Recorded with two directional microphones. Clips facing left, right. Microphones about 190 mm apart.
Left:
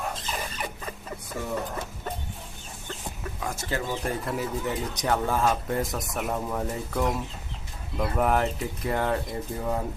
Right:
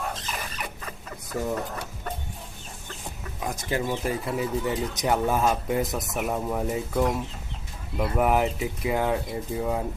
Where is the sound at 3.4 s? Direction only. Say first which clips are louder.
Right 3 dB; 15° right (ahead or behind).